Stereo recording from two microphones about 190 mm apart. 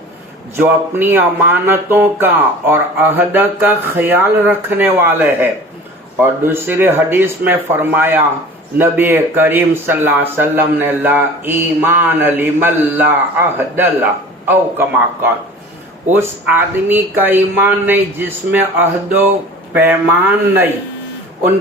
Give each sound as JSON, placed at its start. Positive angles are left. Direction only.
{"t": 0.5, "sound": "speech", "side_deg": -10}
{"t": 14.4, "sound": "speech", "side_deg": -10}